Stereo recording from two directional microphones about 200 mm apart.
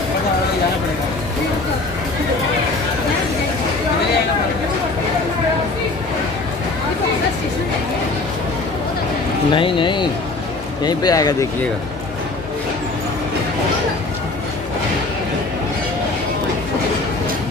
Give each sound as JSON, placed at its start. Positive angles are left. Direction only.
{"t": 9.5, "sound": "a man's voice", "side_deg": 25}